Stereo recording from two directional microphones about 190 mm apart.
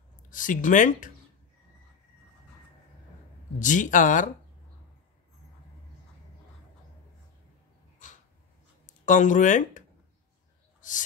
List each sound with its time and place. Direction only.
0.3 s speech: 45° left (ahead or behind)
3.5 s speech: 40° left (ahead or behind)
8.8 s speech: 40° left (ahead or behind)
10.8 s a sound: 40° left (ahead or behind)